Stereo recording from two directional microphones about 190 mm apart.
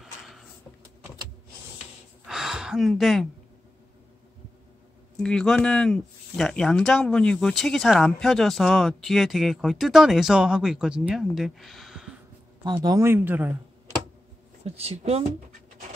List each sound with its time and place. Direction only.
2.2 s a sound: centre (ahead or behind)
5.2 s speech: 5° left (ahead or behind)
12.6 s speech: 20° right (ahead or behind)
14.6 s speech: 30° right (ahead or behind)